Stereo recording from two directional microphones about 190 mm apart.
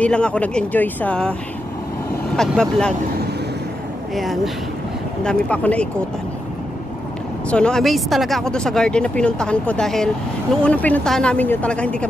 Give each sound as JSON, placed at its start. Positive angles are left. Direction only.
{"t": 0.0, "sound": "speech", "side_deg": 5}
{"t": 2.3, "sound": "speech", "side_deg": 5}
{"t": 4.1, "sound": "speech", "side_deg": 0}
{"t": 7.4, "sound": "speech", "side_deg": 5}